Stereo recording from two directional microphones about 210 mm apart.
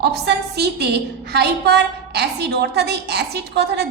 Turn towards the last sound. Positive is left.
turn(degrees=-50)  # may be behind; listen again after turning